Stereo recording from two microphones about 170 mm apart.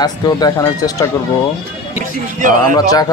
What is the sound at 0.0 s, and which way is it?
Speech, 20° left (ahead or behind).